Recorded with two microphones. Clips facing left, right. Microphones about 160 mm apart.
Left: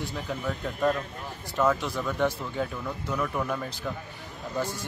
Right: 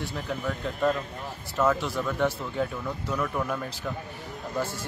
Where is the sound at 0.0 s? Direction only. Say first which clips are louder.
Right 1 dB; centre (ahead or behind).